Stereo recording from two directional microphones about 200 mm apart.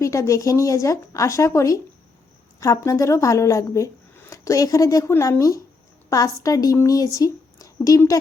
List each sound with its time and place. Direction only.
0.0 s speech: 15° left (ahead or behind)